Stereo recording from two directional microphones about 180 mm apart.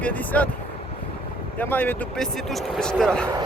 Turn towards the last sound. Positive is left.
turn(degrees=5)  # may be behind; listen again after turning